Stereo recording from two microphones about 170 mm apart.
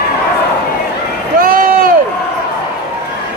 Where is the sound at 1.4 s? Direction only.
55° right (ahead or behind).